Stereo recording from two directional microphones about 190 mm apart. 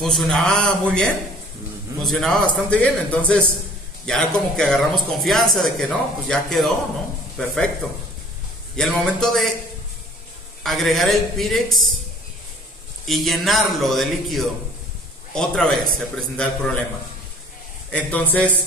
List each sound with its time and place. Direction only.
0.0 s speech: centre (ahead or behind)
8.7 s speech: 5° left (ahead or behind)
10.6 s speech: centre (ahead or behind)
13.0 s speech: centre (ahead or behind)
17.9 s a man's voice: 10° left (ahead or behind)